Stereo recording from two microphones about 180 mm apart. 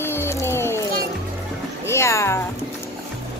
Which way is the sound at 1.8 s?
15° left (ahead or behind).